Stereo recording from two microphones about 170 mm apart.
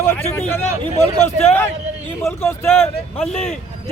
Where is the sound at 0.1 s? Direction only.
10° left (ahead or behind).